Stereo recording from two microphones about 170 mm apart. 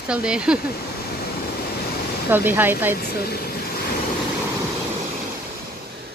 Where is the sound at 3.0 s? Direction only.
70° left (ahead or behind).